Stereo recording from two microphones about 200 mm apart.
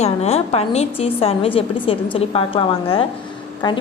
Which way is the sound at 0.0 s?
30° left (ahead or behind).